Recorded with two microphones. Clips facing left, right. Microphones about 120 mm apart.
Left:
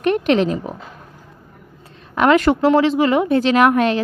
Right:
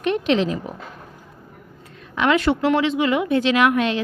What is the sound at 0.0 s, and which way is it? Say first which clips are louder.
Speech: left 4 dB; 50° left (ahead or behind).